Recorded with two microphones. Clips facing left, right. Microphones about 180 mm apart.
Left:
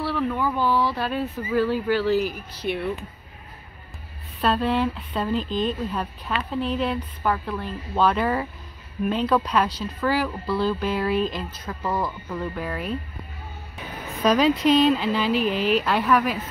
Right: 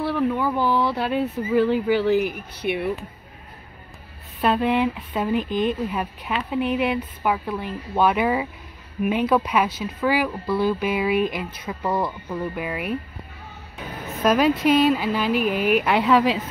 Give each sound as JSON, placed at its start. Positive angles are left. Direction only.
{"t": 0.0, "sound": "speech", "side_deg": -15}
{"t": 4.4, "sound": "speech", "side_deg": -10}
{"t": 11.8, "sound": "a woman's voice", "side_deg": -25}
{"t": 12.3, "sound": "speech", "side_deg": -10}
{"t": 14.2, "sound": "a woman's voice", "side_deg": -5}